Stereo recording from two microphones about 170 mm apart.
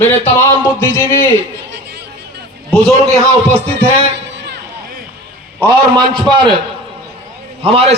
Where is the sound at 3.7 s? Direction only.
85° right.